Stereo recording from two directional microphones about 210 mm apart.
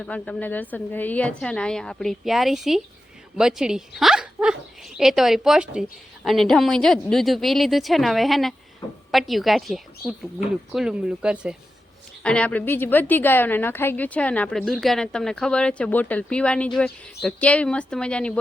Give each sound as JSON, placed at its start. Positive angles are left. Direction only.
{"t": 0.0, "sound": "a woman's voice", "side_deg": 5}
{"t": 8.8, "sound": "a sound", "side_deg": 15}
{"t": 9.1, "sound": "a woman's voice", "side_deg": 0}